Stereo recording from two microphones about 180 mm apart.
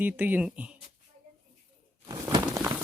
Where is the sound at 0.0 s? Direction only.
10° right (ahead or behind).